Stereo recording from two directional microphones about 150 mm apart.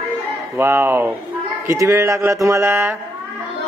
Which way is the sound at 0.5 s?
15° right (ahead or behind).